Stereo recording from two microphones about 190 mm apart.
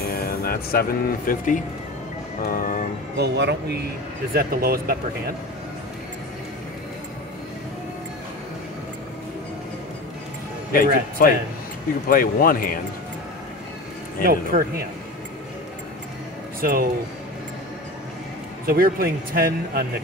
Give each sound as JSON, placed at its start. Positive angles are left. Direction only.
{"t": 0.0, "sound": "speech", "side_deg": 55}
{"t": 3.2, "sound": "a man's voice", "side_deg": -65}
{"t": 4.3, "sound": "speech", "side_deg": -50}
{"t": 10.7, "sound": "speech", "side_deg": 50}
{"t": 14.2, "sound": "speech", "side_deg": -50}
{"t": 16.6, "sound": "speech", "side_deg": -50}
{"t": 18.7, "sound": "speech", "side_deg": -50}